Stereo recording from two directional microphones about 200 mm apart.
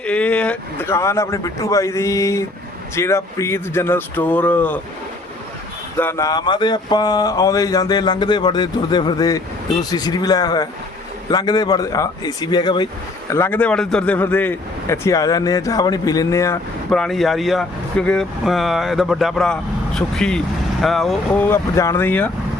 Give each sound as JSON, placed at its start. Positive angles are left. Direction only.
{"t": 0.0, "sound": "speech", "side_deg": 5}
{"t": 6.0, "sound": "speech", "side_deg": 15}
{"t": 13.3, "sound": "speech", "side_deg": 10}
{"t": 16.9, "sound": "speech", "side_deg": 0}